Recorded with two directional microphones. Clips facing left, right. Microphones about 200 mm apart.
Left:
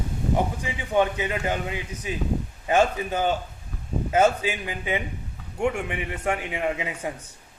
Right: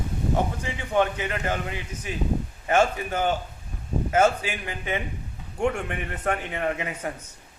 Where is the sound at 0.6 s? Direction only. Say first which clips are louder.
Left 1 dB; 15° left (ahead or behind).